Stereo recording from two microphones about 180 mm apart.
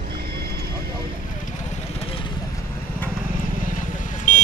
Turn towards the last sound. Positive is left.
turn(degrees=45)  # may be behind; listen again after turning